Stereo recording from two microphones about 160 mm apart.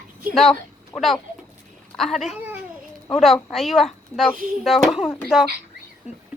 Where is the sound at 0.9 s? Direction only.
Centre (ahead or behind).